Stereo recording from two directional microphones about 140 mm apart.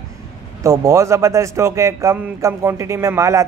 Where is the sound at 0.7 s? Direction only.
20° right (ahead or behind).